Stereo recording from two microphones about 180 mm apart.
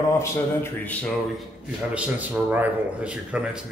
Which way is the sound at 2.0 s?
10° right (ahead or behind).